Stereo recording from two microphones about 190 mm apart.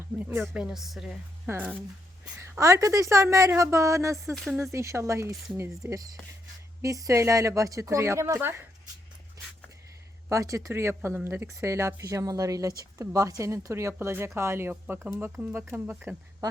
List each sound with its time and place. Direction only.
0.2 s speech: 10° right (ahead or behind)
4.4 s speech: centre (ahead or behind)
4.7 s speech: 15° right (ahead or behind)
10.2 s speech: 15° right (ahead or behind)